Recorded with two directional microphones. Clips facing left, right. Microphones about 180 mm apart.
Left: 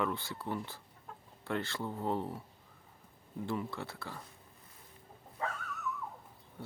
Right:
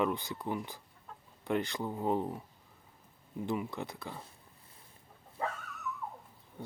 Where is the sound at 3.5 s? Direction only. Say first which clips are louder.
Right 2 dB; 20° right (ahead or behind).